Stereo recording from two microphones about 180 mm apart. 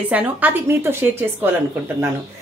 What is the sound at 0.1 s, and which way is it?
Speech, 10° right (ahead or behind).